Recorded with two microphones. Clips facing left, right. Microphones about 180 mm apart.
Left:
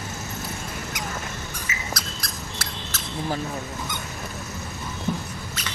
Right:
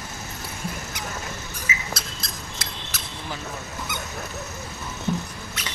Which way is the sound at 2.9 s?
15° right (ahead or behind).